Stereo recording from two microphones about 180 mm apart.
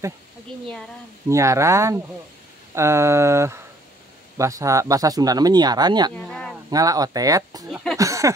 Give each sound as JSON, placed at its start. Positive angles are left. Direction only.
{"t": 1.3, "sound": "a sound", "side_deg": -15}
{"t": 4.4, "sound": "speech", "side_deg": -15}
{"t": 6.1, "sound": "speech", "side_deg": 5}
{"t": 6.7, "sound": "speech", "side_deg": -20}
{"t": 7.7, "sound": "speech", "side_deg": 0}
{"t": 8.0, "sound": "a sound", "side_deg": -20}